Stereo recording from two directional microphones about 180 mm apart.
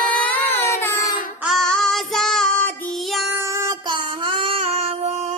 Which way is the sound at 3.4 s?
20° right (ahead or behind).